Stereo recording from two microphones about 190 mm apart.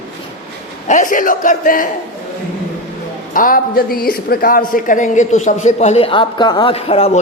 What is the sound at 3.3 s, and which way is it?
A man's voice, 45° left (ahead or behind).